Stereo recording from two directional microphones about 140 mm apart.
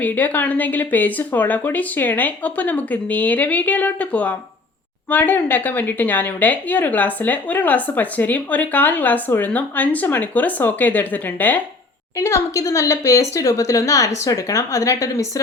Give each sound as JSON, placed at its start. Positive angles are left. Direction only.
{"t": 0.0, "sound": "speech", "side_deg": 10}